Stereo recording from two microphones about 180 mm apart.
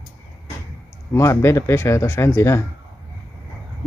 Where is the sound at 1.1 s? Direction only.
15° left (ahead or behind).